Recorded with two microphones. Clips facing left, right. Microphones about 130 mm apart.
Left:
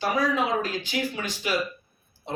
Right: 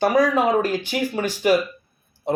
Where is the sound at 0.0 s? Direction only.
50° right (ahead or behind).